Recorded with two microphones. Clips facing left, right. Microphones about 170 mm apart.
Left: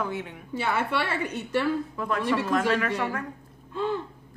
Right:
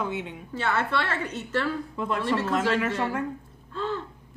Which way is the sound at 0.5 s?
10° left (ahead or behind).